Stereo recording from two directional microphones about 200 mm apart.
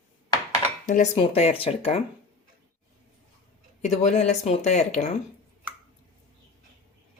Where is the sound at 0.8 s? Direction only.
35° left (ahead or behind).